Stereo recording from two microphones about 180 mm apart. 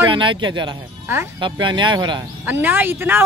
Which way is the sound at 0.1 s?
25° right (ahead or behind).